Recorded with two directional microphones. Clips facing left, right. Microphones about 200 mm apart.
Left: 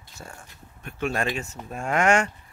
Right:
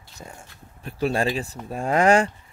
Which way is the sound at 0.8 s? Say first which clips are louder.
Right 4 dB; 35° right (ahead or behind).